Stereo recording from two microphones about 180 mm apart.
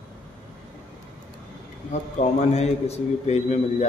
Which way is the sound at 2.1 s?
40° left (ahead or behind).